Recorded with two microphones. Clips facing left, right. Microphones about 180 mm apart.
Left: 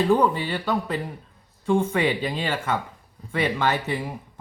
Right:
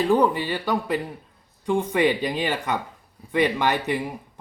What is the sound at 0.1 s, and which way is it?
Speech, 15° right (ahead or behind).